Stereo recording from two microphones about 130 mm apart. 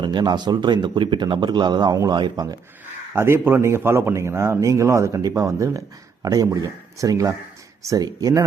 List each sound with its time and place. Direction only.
0.0 s a man's voice: 35° right (ahead or behind)
3.1 s speech: 20° right (ahead or behind)